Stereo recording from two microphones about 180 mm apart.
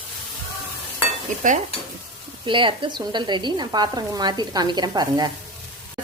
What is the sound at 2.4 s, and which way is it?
Speech, 25° right (ahead or behind).